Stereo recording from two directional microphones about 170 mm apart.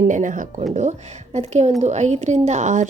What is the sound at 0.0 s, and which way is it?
A woman's voice, 50° right (ahead or behind).